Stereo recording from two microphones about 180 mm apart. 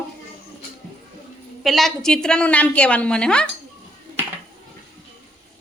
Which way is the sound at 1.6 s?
Centre (ahead or behind).